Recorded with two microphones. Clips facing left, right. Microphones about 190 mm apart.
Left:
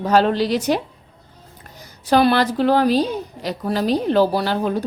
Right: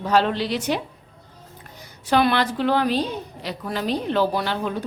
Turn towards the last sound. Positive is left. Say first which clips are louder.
# left 5 dB
turn(degrees=40)  # may be behind; listen again after turning